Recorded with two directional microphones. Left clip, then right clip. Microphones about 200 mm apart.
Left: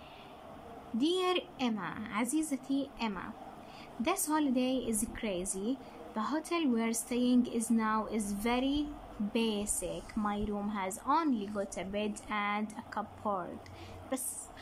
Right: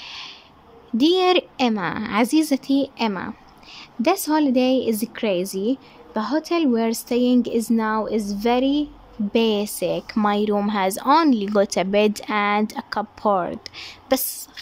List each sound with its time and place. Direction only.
0.9 s a woman's voice: 45° right (ahead or behind)